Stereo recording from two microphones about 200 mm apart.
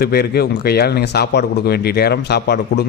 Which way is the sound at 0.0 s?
50° left (ahead or behind).